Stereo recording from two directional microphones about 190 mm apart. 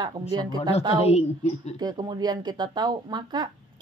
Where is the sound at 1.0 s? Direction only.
35° left (ahead or behind).